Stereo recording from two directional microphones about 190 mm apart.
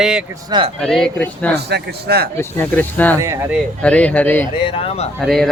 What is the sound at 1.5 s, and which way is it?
Speech, 60° right (ahead or behind).